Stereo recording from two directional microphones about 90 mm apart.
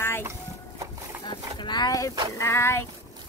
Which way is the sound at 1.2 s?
55° left (ahead or behind).